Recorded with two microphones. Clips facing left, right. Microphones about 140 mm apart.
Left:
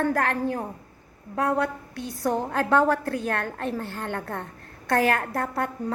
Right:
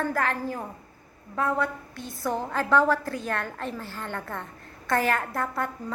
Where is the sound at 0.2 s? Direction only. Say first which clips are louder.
Left 3 dB; 55° left (ahead or behind).